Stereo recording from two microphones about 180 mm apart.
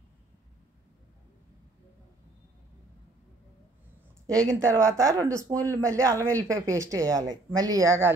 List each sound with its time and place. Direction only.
4.4 s speech: 15° right (ahead or behind)